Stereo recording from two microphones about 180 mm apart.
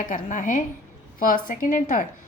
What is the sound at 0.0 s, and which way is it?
A woman's voice, 45° left (ahead or behind).